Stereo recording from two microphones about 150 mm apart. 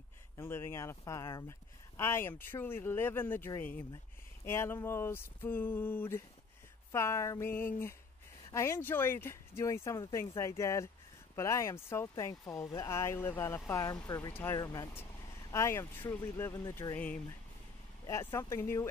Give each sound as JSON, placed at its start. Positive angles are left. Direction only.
{"t": 0.4, "sound": "speech", "side_deg": 15}
{"t": 16.9, "sound": "speech", "side_deg": 10}
{"t": 18.3, "sound": "speech", "side_deg": 20}